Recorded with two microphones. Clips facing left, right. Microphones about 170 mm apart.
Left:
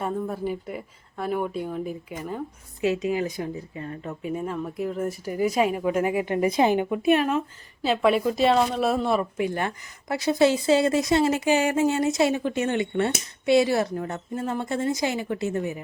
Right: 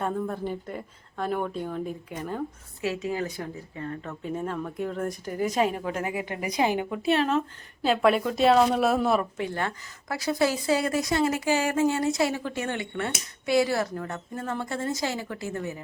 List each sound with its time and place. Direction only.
0.0 s a woman's voice: 5° left (ahead or behind)
2.8 s speech: 20° left (ahead or behind)
6.0 s speech: 20° left (ahead or behind)
6.7 s speech: 15° left (ahead or behind)
7.9 s a woman's voice: centre (ahead or behind)
9.4 s speech: 15° left (ahead or behind)